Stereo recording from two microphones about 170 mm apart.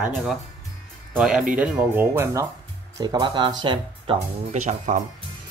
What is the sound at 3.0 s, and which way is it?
Speech, 25° right (ahead or behind).